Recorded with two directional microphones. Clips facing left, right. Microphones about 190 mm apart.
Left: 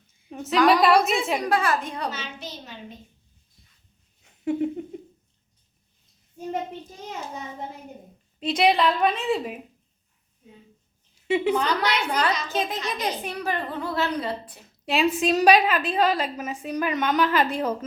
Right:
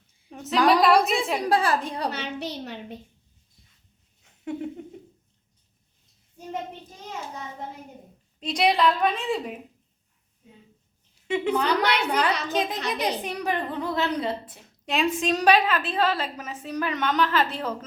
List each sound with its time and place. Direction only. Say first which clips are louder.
0.3 s a sound: left 4 dB; centre (ahead or behind)
0.7 s a woman's voice: right 1 dB; centre (ahead or behind)
1.4 s a woman's voice: right 1 dB; 35° right (ahead or behind)
2.0 s a child's voice: right 3 dB; 65° right (ahead or behind)
8.4 s a woman's voice: left 2 dB; 5° left (ahead or behind)
11.3 s a woman's voice: left 2 dB; 10° left (ahead or behind)
11.8 s a child's voice: right 1 dB; 65° right (ahead or behind)
12.5 s a child's voice: right 1 dB; 15° right (ahead or behind)
12.8 s a child's voice: right 1 dB; 65° right (ahead or behind)
13.2 s a child's voice: right 1 dB; 15° right (ahead or behind)
14.8 s a woman's voice: left 2 dB; 5° left (ahead or behind)